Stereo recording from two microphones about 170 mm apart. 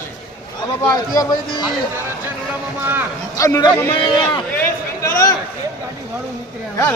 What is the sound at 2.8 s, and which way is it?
Speech, 10° right (ahead or behind).